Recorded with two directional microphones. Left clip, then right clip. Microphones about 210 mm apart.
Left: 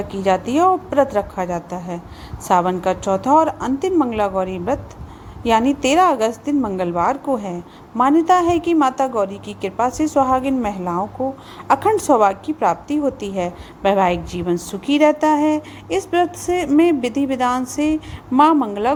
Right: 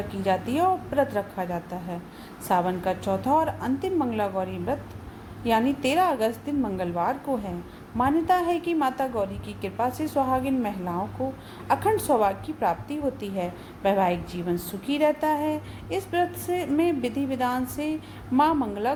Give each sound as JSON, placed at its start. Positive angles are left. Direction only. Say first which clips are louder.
{"t": 0.1, "sound": "a woman's voice", "louder": "left 8 dB", "side_deg": 30}